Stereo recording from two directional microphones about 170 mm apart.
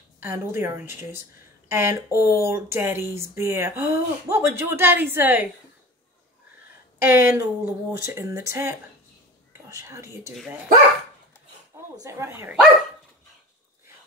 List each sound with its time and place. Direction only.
0.2 s speech: 15° right (ahead or behind)
7.0 s speech: 15° right (ahead or behind)
12.0 s speech: 15° right (ahead or behind)